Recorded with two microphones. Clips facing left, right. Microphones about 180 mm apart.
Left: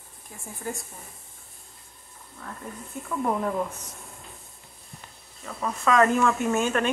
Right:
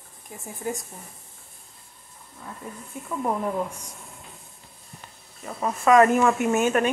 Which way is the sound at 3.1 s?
10° right (ahead or behind).